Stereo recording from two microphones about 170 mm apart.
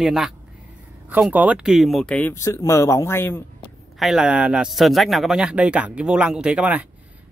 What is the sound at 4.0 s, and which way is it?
Speech, centre (ahead or behind).